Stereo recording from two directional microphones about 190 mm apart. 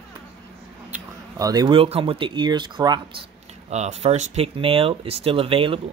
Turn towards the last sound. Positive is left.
turn(degrees=-30)  # may be behind; listen again after turning